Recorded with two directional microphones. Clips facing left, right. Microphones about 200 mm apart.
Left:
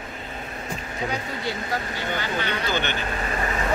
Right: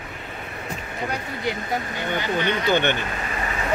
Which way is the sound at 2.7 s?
55° right (ahead or behind).